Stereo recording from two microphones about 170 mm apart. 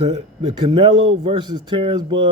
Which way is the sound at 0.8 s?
30° right (ahead or behind).